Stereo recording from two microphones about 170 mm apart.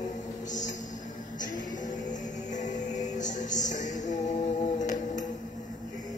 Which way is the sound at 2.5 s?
45° left (ahead or behind).